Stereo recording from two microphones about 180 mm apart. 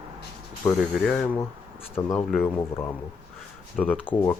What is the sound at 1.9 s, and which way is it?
Speech, 10° left (ahead or behind).